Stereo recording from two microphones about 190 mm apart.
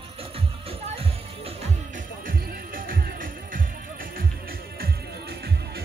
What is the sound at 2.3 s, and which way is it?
Music, 50° right (ahead or behind).